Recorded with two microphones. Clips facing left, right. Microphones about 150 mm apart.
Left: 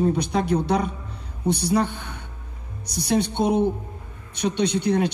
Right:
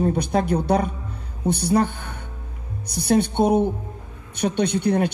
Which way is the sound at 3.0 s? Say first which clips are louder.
Right 3 dB; 55° right (ahead or behind).